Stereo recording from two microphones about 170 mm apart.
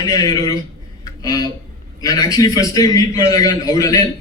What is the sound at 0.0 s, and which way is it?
A man's voice, 20° left (ahead or behind).